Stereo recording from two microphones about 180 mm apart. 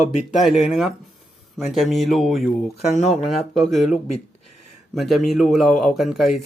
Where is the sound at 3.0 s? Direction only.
40° left (ahead or behind).